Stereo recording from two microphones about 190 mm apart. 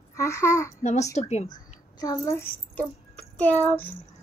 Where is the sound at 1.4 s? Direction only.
20° left (ahead or behind).